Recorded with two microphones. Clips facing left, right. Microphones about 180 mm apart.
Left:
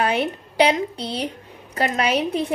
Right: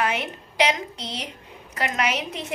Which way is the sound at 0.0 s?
30° left (ahead or behind).